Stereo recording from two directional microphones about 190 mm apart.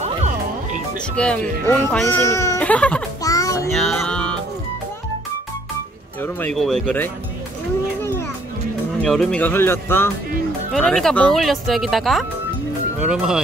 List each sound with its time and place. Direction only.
1.1 s speech: 5° left (ahead or behind)
3.3 s child singing: 20° left (ahead or behind)
3.7 s music: centre (ahead or behind)
6.2 s speech: 5° left (ahead or behind)
9.0 s speech: 5° left (ahead or behind)